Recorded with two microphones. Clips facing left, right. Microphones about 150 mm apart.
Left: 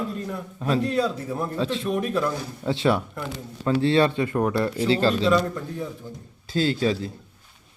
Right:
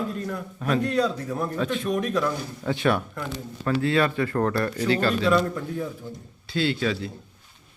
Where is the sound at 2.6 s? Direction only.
25° left (ahead or behind).